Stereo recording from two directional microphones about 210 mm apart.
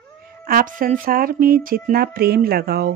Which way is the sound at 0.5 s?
40° right (ahead or behind).